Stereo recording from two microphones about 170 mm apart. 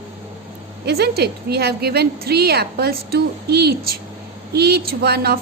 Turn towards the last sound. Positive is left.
turn(degrees=-70)  # may be behind; listen again after turning